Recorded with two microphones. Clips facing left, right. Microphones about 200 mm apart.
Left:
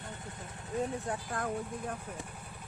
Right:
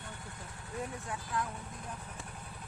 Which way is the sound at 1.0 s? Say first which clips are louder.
Left 2 dB; 45° left (ahead or behind).